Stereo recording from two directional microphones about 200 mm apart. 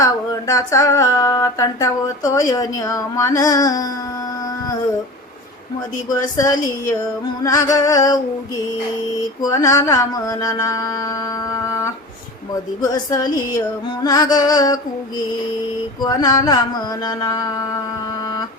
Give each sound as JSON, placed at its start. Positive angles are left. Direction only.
{"t": 0.0, "sound": "music", "side_deg": 15}
{"t": 6.1, "sound": "music", "side_deg": 15}
{"t": 9.4, "sound": "music", "side_deg": 15}
{"t": 12.8, "sound": "music", "side_deg": 20}
{"t": 16.0, "sound": "music", "side_deg": 20}